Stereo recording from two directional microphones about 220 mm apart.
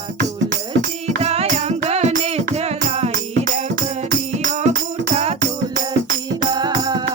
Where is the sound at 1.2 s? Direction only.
30° right (ahead or behind).